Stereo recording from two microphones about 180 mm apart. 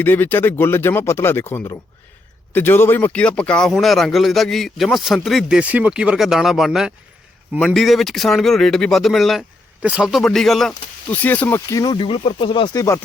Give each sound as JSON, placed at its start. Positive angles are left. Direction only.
{"t": 0.0, "sound": "speech", "side_deg": 10}